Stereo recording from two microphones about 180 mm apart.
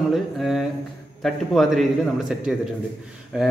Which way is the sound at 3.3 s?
5° right (ahead or behind).